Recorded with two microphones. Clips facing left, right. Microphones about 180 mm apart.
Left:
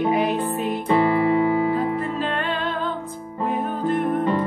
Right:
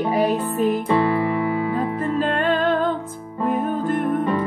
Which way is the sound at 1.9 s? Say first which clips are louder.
Right 3 dB; 45° right (ahead or behind).